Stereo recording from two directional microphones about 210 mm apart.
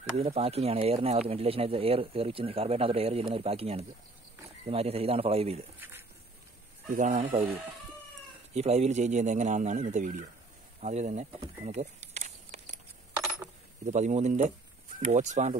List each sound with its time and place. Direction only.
0.2 s speech: 30° right (ahead or behind)
5.8 s speech: 10° right (ahead or behind)
7.0 s speech: 35° right (ahead or behind)
8.5 s speech: 30° right (ahead or behind)
10.8 s a sound: 35° right (ahead or behind)
13.8 s speech: 35° right (ahead or behind)